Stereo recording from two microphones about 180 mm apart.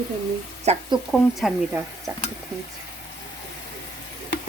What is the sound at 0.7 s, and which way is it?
Speech, 35° right (ahead or behind).